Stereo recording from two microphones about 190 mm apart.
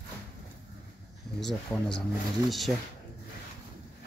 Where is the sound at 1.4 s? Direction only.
Centre (ahead or behind).